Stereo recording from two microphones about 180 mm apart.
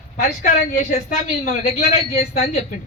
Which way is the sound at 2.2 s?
35° left (ahead or behind).